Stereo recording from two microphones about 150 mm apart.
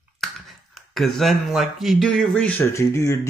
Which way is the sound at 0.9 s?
Centre (ahead or behind).